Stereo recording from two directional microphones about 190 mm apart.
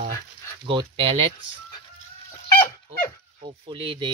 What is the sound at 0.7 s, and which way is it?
Speech, 25° right (ahead or behind).